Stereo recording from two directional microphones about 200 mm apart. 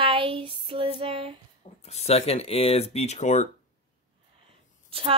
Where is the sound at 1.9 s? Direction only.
30° left (ahead or behind).